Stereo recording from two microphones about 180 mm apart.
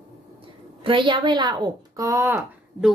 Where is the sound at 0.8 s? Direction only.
25° right (ahead or behind).